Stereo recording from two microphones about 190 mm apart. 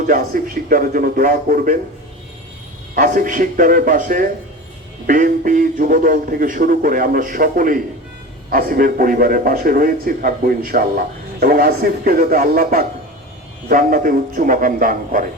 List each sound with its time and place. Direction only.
0.1 s a man's voice: 50° right (ahead or behind)
2.9 s a man's voice: 45° right (ahead or behind)